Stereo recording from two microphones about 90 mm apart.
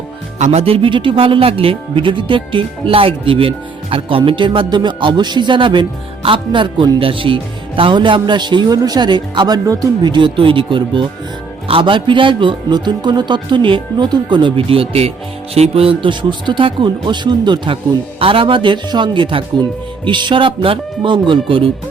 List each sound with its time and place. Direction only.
0.6 s speech: 90° right
4.3 s speech: 65° right (ahead or behind)
7.8 s speech: 70° right (ahead or behind); by 10.1 s 45° right (ahead or behind)
10.1 s speech: 60° right (ahead or behind)
18.2 s speech: 85° right